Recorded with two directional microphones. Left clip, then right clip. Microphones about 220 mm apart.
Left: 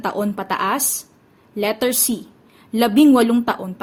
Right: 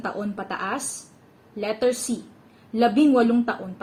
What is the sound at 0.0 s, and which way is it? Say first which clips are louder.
A woman's voice: left 7 dB; 50° left (ahead or behind).